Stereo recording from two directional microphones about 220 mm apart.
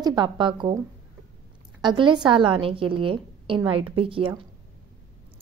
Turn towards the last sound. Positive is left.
turn(degrees=-25)  # may be behind; listen again after turning